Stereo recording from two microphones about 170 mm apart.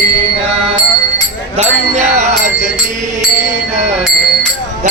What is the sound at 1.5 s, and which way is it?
Music, 40° right (ahead or behind).